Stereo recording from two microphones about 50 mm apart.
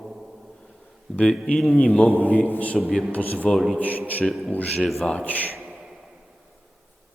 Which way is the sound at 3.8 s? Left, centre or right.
Left.